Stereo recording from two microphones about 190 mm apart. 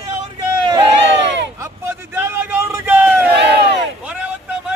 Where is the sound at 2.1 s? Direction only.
10° right (ahead or behind).